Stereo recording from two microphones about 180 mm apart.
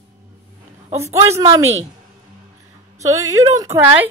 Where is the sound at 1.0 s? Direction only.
15° right (ahead or behind).